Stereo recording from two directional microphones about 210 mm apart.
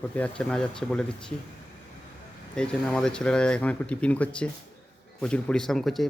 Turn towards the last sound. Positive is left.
turn(degrees=0)  # may be behind; listen again after turning